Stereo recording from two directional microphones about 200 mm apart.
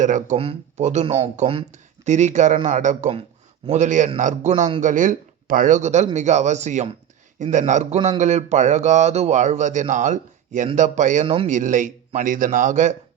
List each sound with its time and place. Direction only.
0.0 s speech: 40° right (ahead or behind)